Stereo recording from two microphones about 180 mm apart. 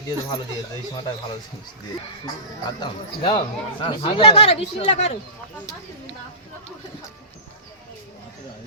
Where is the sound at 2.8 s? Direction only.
30° left (ahead or behind).